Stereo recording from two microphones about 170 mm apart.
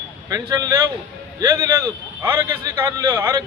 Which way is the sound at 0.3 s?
20° right (ahead or behind).